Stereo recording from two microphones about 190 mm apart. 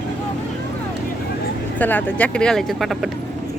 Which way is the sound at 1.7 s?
10° left (ahead or behind).